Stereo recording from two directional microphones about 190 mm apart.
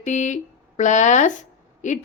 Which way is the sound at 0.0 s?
40° left (ahead or behind).